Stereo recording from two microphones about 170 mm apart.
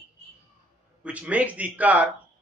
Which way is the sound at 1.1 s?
10° right (ahead or behind).